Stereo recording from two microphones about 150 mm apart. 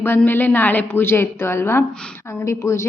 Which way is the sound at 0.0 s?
15° left (ahead or behind).